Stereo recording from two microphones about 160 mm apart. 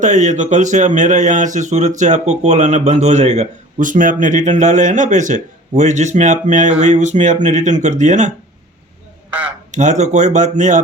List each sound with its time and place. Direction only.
0.0 s speech: 50° right (ahead or behind)
9.7 s speech: 50° right (ahead or behind)